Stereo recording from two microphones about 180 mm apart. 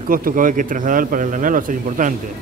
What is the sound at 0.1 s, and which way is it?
Speech, 50° right (ahead or behind).